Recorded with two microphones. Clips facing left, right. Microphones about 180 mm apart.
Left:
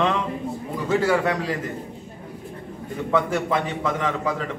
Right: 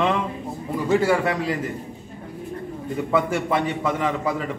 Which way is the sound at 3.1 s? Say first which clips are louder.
Even; 10° right (ahead or behind).